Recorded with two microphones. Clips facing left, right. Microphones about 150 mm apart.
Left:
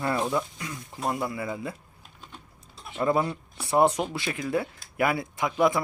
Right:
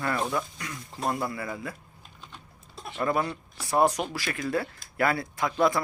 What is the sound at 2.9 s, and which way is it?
Speech, 15° left (ahead or behind).